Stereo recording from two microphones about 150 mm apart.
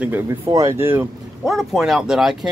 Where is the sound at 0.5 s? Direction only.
20° right (ahead or behind).